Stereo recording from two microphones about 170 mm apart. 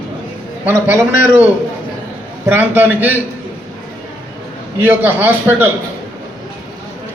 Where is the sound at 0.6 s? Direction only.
15° right (ahead or behind).